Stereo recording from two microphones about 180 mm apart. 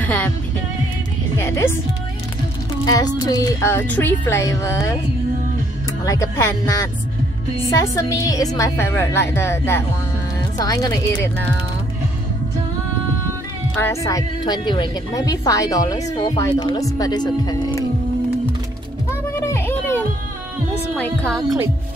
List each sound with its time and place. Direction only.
0.0 s music: 10° left (ahead or behind)
1.4 s a woman's voice: 15° left (ahead or behind)
2.8 s a woman's voice: 20° left (ahead or behind)
6.0 s a woman's voice: 15° left (ahead or behind)
13.7 s speech: 15° left (ahead or behind)
19.4 s a sound: 15° left (ahead or behind)
20.9 s music: 5° left (ahead or behind)